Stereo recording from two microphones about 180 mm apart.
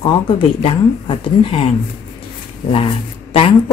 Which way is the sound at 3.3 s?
30° left (ahead or behind).